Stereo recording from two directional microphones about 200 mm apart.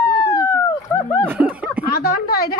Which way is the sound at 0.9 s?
10° left (ahead or behind).